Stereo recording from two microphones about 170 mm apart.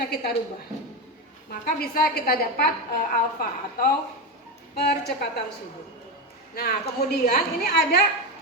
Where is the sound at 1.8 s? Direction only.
65° left (ahead or behind).